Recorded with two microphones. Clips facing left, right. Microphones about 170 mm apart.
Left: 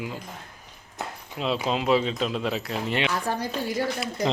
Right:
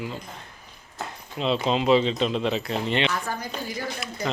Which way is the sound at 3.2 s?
30° left (ahead or behind).